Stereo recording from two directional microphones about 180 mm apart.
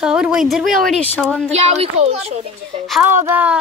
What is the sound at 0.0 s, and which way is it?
Speech, 5° right (ahead or behind).